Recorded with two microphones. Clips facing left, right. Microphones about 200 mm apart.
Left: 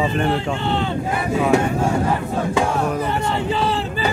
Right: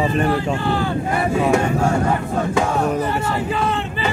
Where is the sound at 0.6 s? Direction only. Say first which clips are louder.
Right 1 dB; 25° left (ahead or behind).